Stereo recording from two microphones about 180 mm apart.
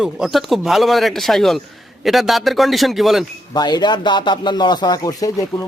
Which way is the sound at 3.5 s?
25° left (ahead or behind).